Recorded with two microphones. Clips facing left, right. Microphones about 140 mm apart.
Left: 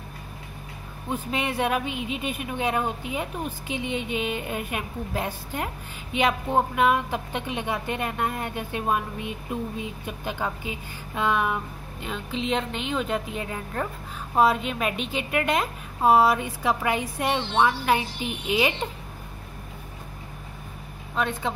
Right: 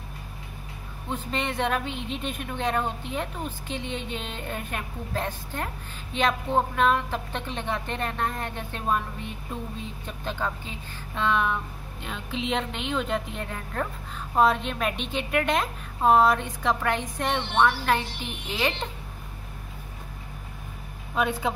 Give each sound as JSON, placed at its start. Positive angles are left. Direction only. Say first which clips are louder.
{"t": 1.0, "sound": "speech", "louder": "left 2 dB", "side_deg": 10}
{"t": 21.1, "sound": "speech", "louder": "right 1 dB", "side_deg": -5}